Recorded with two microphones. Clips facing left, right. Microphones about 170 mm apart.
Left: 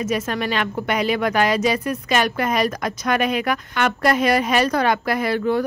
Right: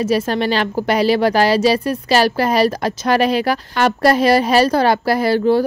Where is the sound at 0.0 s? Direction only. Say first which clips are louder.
Right 6 dB; 30° right (ahead or behind).